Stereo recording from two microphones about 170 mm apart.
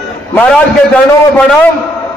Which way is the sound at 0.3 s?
10° left (ahead or behind).